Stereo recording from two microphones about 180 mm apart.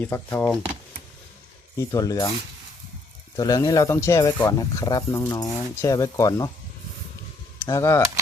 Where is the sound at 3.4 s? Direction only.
20° left (ahead or behind).